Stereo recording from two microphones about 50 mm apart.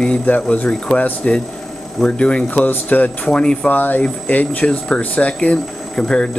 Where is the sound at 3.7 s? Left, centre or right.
Left.